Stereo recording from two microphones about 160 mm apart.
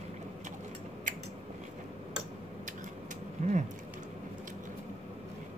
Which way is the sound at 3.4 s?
55° right (ahead or behind).